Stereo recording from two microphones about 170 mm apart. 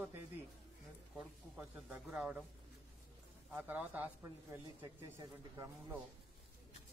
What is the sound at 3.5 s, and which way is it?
Speech, 10° right (ahead or behind).